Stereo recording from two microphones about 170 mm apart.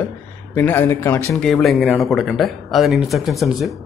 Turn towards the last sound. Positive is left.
turn(degrees=0)  # may be behind; listen again after turning